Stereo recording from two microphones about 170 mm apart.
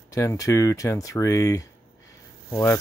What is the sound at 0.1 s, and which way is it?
Speech, 20° left (ahead or behind).